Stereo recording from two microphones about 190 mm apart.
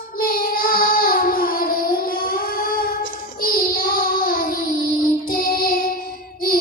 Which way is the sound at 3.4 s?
50° left (ahead or behind).